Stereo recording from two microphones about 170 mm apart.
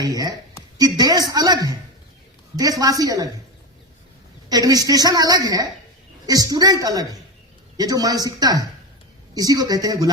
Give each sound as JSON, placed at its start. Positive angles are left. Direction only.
{"t": 0.0, "sound": "a woman's voice", "side_deg": -20}
{"t": 4.4, "sound": "a woman's voice", "side_deg": -20}